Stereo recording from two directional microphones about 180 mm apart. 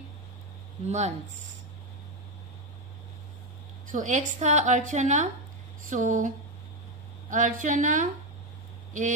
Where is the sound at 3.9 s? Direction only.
45° right (ahead or behind).